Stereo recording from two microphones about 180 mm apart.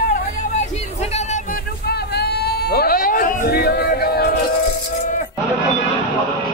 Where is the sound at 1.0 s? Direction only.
40° left (ahead or behind).